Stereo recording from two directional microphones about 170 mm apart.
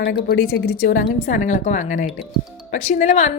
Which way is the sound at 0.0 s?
75° left (ahead or behind).